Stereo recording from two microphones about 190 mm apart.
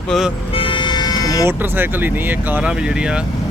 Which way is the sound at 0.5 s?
25° left (ahead or behind).